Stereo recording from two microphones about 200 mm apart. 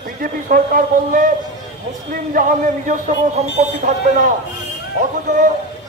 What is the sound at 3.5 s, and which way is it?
Speech, 35° right (ahead or behind).